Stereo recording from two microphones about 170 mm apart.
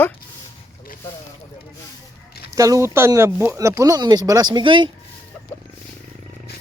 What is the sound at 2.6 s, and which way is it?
Speech, 20° right (ahead or behind).